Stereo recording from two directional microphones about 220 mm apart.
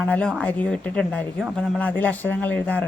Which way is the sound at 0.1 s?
5° left (ahead or behind).